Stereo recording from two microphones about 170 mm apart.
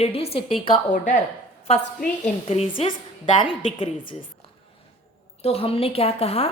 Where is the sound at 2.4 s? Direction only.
40° left (ahead or behind).